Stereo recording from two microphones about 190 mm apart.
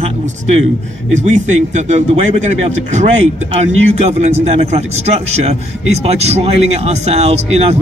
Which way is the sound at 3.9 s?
35° right (ahead or behind).